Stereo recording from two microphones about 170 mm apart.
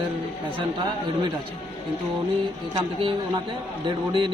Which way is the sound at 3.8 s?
30° right (ahead or behind).